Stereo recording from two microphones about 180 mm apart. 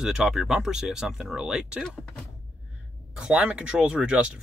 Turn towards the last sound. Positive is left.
turn(degrees=-5)  # may be behind; listen again after turning